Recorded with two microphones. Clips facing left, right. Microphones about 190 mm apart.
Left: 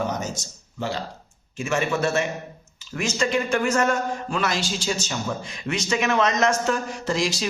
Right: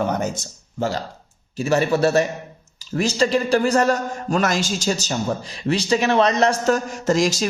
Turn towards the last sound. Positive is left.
turn(degrees=-45)  # may be behind; listen again after turning